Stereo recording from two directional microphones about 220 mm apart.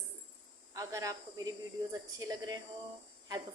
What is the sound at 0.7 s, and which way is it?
A woman's voice, 15° right (ahead or behind).